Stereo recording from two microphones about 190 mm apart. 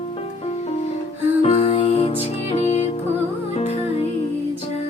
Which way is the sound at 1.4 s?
30° left (ahead or behind).